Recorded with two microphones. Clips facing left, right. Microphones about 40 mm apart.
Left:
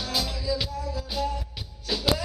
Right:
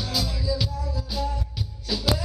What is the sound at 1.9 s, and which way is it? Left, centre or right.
Music, centre.